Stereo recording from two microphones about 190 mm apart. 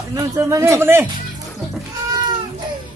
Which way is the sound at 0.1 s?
15° right (ahead or behind).